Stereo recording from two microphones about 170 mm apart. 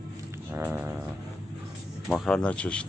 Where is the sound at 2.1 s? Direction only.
5° left (ahead or behind).